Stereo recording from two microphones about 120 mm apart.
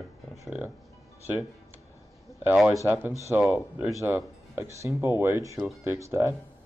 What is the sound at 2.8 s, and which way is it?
Speech, 15° right (ahead or behind).